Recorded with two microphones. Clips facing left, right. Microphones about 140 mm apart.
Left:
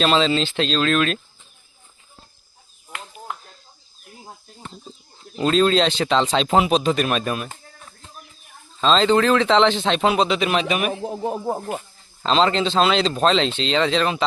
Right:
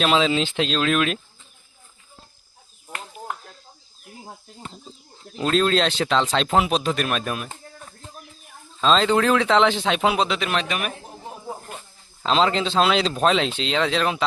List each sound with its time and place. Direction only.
0.0 s speech: 5° right (ahead or behind)
5.4 s speech: centre (ahead or behind)
8.8 s speech: centre (ahead or behind)
11.0 s snake: 65° left (ahead or behind)
12.2 s speech: 5° right (ahead or behind)